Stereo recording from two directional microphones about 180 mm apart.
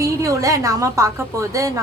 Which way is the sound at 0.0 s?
15° right (ahead or behind).